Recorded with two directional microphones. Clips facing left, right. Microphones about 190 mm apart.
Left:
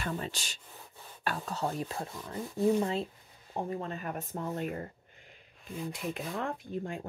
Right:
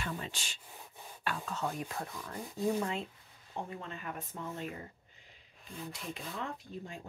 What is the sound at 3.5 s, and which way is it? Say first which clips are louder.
Speech: left 6 dB; 40° left (ahead or behind).